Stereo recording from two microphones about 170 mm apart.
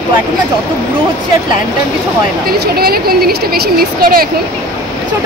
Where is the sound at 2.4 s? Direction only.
65° right (ahead or behind).